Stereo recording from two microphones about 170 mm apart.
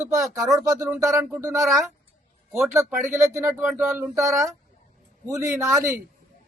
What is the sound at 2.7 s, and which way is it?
Speech, 15° right (ahead or behind).